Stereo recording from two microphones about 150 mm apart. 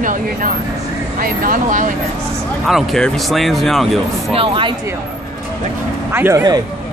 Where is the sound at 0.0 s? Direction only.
65° right (ahead or behind).